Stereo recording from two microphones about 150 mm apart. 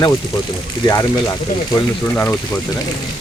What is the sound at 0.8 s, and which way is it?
Speech, 20° left (ahead or behind).